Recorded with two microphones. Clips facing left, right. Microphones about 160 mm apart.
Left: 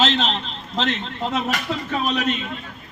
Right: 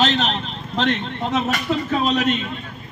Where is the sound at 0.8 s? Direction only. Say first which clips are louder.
Right 3 dB; 5° left (ahead or behind).